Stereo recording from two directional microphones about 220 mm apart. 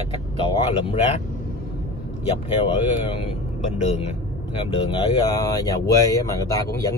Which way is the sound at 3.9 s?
30° left (ahead or behind).